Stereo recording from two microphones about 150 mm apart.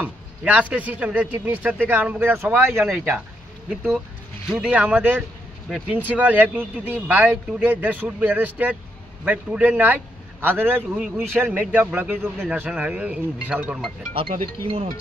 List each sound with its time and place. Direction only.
0.0 s speech: 10° right (ahead or behind)
4.5 s speech: 5° right (ahead or behind)
14.4 s speech: 40° right (ahead or behind)